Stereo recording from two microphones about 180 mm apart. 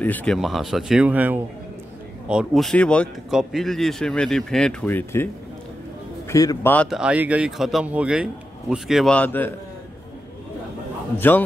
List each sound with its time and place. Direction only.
0.0 s a man's voice: 10° left (ahead or behind)
6.7 s speech: 5° left (ahead or behind)
7.0 s speech: 5° right (ahead or behind); by 9.5 s 10° left (ahead or behind)
11.1 s speech: 10° left (ahead or behind)